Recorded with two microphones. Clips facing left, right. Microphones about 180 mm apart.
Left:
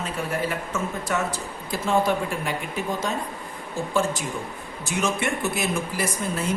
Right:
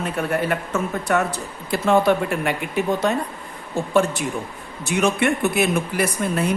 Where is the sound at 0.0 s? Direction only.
60° right (ahead or behind).